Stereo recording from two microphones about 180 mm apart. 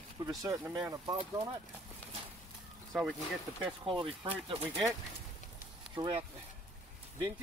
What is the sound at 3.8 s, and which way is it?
Speech, 30° right (ahead or behind).